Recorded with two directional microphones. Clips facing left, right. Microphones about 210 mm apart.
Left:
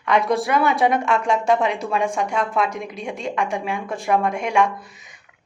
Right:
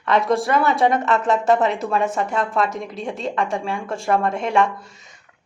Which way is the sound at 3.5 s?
15° left (ahead or behind).